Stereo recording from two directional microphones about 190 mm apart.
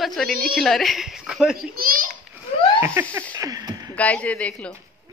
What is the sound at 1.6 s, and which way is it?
Speech, 50° right (ahead or behind).